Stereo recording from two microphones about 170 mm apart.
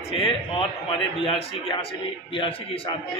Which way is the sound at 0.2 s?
30° left (ahead or behind).